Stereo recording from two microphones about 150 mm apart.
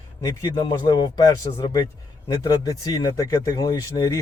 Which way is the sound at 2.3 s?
25° left (ahead or behind).